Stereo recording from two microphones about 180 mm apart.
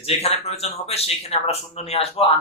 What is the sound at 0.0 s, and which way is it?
A man's voice, 35° left (ahead or behind).